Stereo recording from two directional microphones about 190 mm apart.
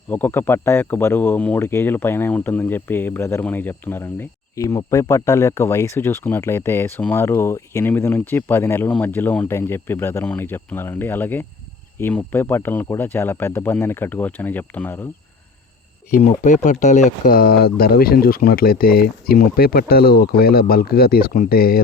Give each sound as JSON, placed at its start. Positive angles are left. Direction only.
{"t": 0.1, "sound": "speech", "side_deg": 10}
{"t": 16.1, "sound": "speech", "side_deg": 45}